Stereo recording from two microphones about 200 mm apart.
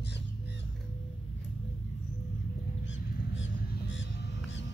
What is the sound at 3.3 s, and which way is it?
Music, 65° left (ahead or behind).